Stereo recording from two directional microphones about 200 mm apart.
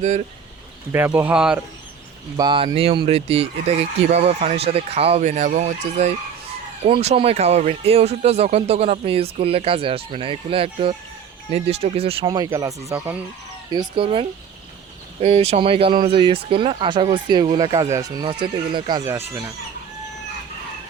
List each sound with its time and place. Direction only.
0.9 s speech: 10° right (ahead or behind)
2.4 s speech: 20° right (ahead or behind)